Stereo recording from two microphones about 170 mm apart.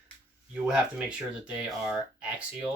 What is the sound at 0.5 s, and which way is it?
Speech, 5° right (ahead or behind).